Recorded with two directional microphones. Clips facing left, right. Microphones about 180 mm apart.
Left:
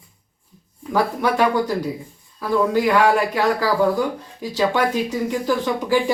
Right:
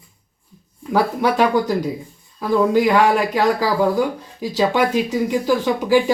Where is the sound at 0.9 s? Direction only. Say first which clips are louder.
Right 2 dB; 15° right (ahead or behind).